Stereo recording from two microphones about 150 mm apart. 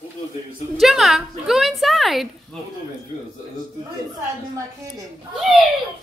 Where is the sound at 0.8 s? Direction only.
Centre (ahead or behind).